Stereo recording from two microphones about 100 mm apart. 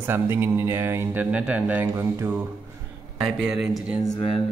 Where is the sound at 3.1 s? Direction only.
10° right (ahead or behind).